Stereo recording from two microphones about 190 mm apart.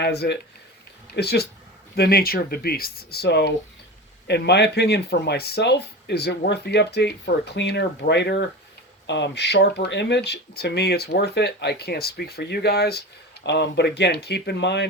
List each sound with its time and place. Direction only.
0.0 s speech: 60° left (ahead or behind)